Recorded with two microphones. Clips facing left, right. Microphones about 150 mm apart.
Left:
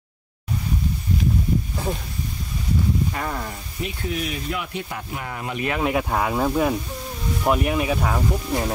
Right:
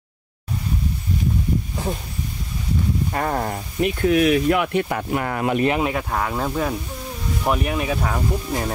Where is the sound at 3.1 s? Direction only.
45° right (ahead or behind).